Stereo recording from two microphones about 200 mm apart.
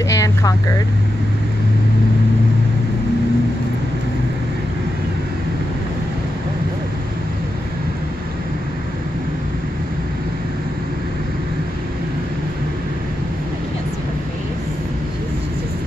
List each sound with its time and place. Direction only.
0.1 s vehicle: 15° left (ahead or behind)